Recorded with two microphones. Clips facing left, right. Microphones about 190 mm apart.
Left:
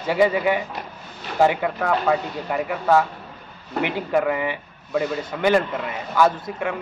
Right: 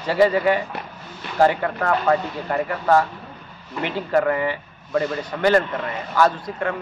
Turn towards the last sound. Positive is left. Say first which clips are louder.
# even
turn(degrees=10)  # may be behind; listen again after turning